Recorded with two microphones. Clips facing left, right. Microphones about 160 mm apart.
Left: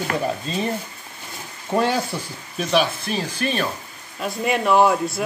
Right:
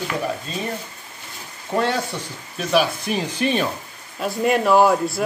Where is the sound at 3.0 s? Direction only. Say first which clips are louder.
Right 2 dB; 15° right (ahead or behind).